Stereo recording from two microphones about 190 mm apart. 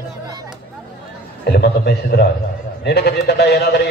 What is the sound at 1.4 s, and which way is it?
A man's voice, 60° left (ahead or behind).